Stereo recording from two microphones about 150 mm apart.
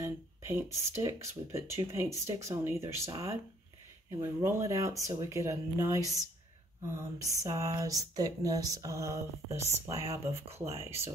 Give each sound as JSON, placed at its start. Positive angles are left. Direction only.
{"t": 0.0, "sound": "speech", "side_deg": -15}